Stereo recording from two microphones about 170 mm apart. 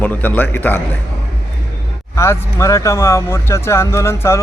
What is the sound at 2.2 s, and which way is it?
Speech, 15° left (ahead or behind).